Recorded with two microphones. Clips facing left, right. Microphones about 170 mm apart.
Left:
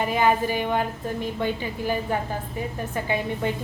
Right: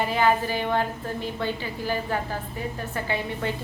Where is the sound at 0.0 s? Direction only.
15° left (ahead or behind).